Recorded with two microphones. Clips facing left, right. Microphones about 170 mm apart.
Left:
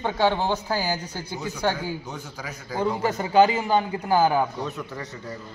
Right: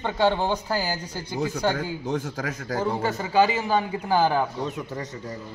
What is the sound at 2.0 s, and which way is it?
Speech, 90° right.